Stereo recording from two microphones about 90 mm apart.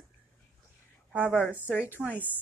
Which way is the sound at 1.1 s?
15° right (ahead or behind).